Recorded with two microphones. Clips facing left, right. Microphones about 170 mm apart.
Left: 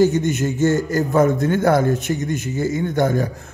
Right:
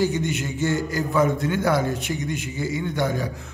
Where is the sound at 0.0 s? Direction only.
45° left (ahead or behind).